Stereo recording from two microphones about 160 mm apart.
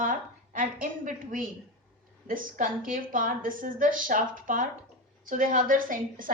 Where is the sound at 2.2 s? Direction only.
60° right (ahead or behind).